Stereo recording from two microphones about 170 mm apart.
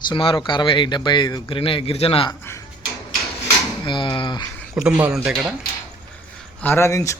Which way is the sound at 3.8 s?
30° left (ahead or behind).